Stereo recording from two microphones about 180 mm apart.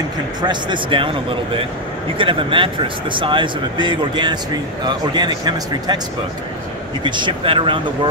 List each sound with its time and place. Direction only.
0.4 s speech: 25° right (ahead or behind)
7.0 s speech: 25° right (ahead or behind)